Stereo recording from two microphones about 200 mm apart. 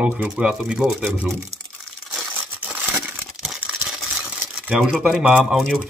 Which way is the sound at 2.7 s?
5° right (ahead or behind).